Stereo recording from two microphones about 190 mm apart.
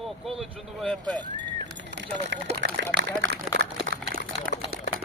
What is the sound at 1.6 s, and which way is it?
Speech, 65° right (ahead or behind).